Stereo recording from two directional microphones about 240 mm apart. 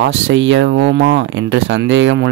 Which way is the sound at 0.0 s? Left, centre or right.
Right.